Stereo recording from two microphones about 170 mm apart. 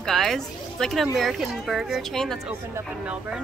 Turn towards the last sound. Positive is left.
turn(degrees=0)  # may be behind; listen again after turning